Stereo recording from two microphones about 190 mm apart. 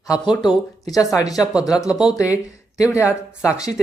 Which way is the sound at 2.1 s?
20° left (ahead or behind).